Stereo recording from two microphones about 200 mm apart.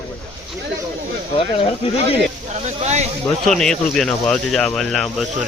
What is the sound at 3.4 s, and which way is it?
Speech, centre (ahead or behind).